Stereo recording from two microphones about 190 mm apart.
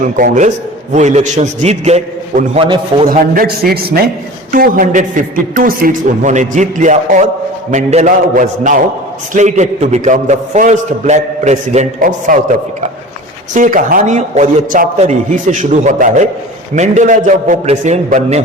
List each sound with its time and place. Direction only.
0.0 s a man's voice: 40° right (ahead or behind)
3.1 s a man's voice: 50° right (ahead or behind)
13.5 s a man's voice: 45° right (ahead or behind)